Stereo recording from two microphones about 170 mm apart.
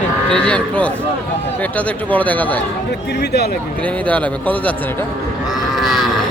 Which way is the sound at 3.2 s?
75° left (ahead or behind).